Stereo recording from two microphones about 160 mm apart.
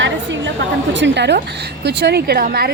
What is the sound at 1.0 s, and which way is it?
A woman's voice, 90° right.